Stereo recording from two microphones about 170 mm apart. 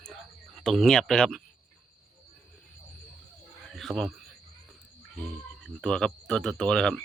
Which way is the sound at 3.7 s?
Centre (ahead or behind).